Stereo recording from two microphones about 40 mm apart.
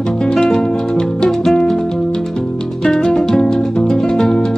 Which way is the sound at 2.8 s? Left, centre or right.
Centre.